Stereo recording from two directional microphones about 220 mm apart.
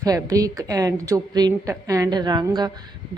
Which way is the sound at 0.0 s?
15° right (ahead or behind).